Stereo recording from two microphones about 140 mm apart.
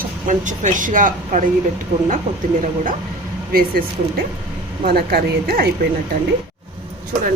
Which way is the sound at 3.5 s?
90° right.